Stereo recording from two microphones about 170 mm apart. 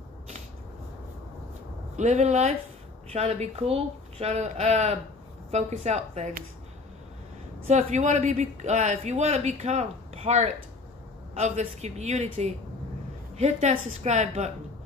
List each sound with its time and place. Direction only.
2.0 s a man's voice: 45° right (ahead or behind)
7.6 s a man's voice: 40° right (ahead or behind)